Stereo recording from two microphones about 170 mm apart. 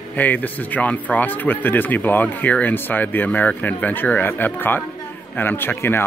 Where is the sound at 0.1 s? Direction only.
10° left (ahead or behind).